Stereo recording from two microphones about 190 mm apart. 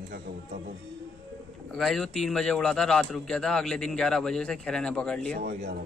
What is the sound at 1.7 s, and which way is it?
A man's voice, centre (ahead or behind).